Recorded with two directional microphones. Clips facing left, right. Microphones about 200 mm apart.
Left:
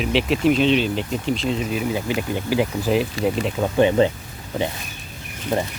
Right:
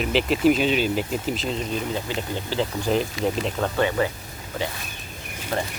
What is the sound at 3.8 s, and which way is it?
Speech, 20° left (ahead or behind).